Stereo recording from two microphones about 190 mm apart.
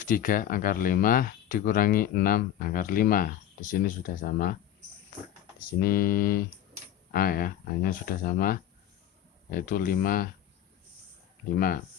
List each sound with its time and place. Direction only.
0.0 s speech: 45° left (ahead or behind)
5.8 s speech: 50° left (ahead or behind)